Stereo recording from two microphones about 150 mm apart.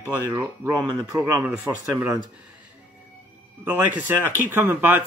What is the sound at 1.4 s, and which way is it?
Speech, 15° right (ahead or behind).